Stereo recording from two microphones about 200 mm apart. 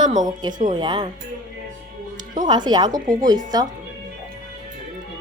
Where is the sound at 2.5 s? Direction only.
20° right (ahead or behind).